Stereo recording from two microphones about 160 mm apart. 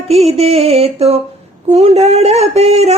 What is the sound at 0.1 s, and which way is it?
Mantra, 40° right (ahead or behind).